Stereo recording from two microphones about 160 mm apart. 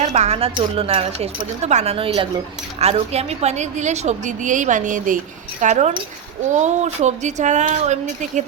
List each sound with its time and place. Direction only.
0.0 s a woman's voice: 45° right (ahead or behind)